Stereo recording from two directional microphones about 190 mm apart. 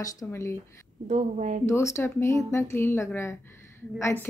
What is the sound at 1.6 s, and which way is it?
A woman's voice, 15° left (ahead or behind).